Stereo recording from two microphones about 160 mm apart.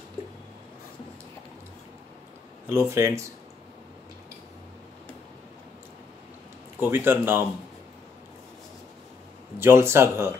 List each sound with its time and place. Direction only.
2.6 s a man's voice: 15° right (ahead or behind)
6.8 s a man's voice: 15° right (ahead or behind)
9.6 s a man's voice: 15° right (ahead or behind)